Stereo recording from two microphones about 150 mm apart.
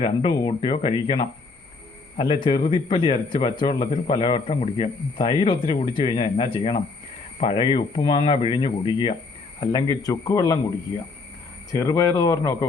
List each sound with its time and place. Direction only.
0.0 s speech: 30° left (ahead or behind)
11.7 s speech: 25° left (ahead or behind)